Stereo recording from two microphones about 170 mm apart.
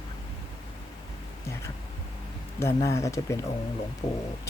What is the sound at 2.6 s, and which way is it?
Speech, 15° left (ahead or behind).